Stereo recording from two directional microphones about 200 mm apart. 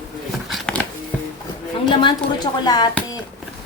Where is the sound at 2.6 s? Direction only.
20° left (ahead or behind).